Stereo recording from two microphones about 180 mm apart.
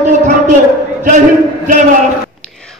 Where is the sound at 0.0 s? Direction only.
40° right (ahead or behind).